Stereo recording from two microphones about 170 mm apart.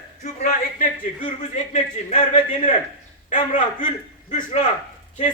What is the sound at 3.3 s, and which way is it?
A man's voice, 50° left (ahead or behind).